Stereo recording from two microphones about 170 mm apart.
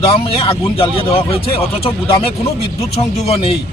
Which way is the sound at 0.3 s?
30° left (ahead or behind).